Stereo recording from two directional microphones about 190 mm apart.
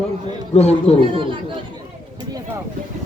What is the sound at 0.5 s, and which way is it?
Speech, 35° left (ahead or behind).